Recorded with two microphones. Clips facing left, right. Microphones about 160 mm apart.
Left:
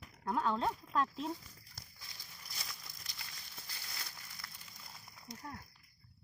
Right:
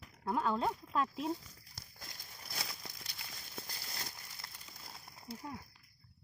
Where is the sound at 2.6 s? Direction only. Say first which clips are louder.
Right 6 dB; 65° right (ahead or behind).